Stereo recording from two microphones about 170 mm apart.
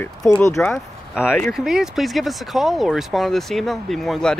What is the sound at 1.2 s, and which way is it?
Speech, 10° left (ahead or behind).